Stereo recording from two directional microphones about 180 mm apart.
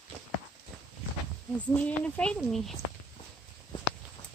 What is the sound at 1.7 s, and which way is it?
Speech, 5° left (ahead or behind).